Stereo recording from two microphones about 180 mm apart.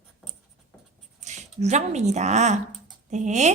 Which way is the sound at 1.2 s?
40° right (ahead or behind).